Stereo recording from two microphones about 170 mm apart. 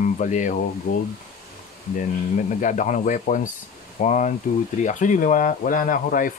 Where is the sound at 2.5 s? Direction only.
50° left (ahead or behind).